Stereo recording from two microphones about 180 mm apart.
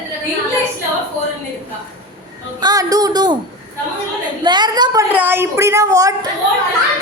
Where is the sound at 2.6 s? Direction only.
20° right (ahead or behind).